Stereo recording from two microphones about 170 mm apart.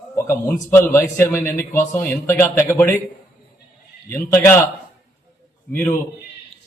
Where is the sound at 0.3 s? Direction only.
15° left (ahead or behind).